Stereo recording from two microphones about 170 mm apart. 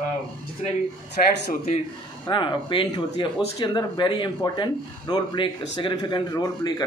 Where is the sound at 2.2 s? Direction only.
30° left (ahead or behind).